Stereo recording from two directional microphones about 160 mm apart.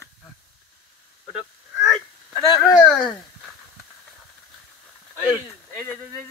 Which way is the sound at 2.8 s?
5° left (ahead or behind).